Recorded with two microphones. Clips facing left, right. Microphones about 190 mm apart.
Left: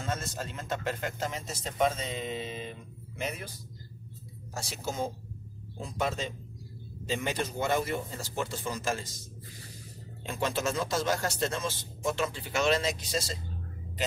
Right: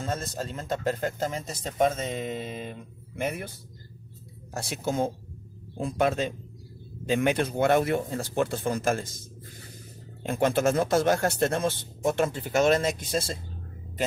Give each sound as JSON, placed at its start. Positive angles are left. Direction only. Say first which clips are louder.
{"t": 0.0, "sound": "a man's voice", "louder": "right 3 dB", "side_deg": -35}
{"t": 4.6, "sound": "speech", "louder": "right 6 dB", "side_deg": -55}
{"t": 10.2, "sound": "a man's voice", "louder": "right 7 dB", "side_deg": -55}